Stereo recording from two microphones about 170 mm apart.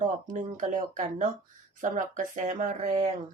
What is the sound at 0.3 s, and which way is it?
Speech, 50° right (ahead or behind).